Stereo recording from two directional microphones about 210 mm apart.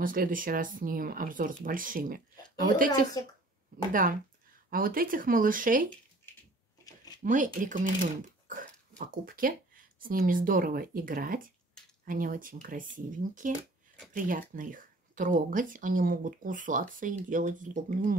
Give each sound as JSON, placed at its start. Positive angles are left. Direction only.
{"t": 0.0, "sound": "speech", "side_deg": -40}
{"t": 3.2, "sound": "speech", "side_deg": 20}
{"t": 4.6, "sound": "speech", "side_deg": -45}
{"t": 7.2, "sound": "speech", "side_deg": -35}